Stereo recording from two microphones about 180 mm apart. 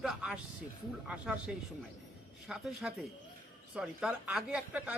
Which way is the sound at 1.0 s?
5° right (ahead or behind).